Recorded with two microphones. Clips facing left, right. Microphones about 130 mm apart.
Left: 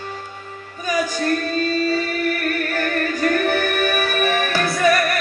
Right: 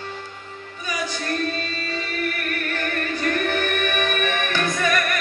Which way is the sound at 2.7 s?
40° left (ahead or behind).